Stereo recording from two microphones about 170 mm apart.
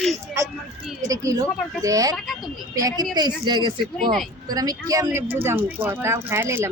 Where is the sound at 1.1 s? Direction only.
20° right (ahead or behind).